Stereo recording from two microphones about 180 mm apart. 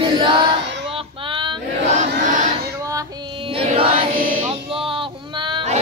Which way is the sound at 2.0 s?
45° right (ahead or behind).